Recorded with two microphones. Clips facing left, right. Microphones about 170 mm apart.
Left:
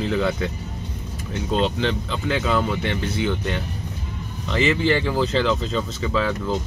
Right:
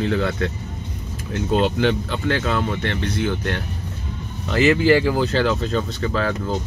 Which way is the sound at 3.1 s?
Centre (ahead or behind).